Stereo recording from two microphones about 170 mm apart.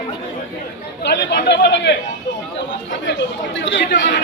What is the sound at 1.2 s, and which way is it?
Speech, 90° left.